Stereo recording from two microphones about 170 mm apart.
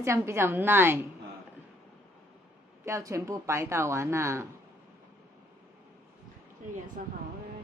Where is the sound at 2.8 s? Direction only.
15° right (ahead or behind).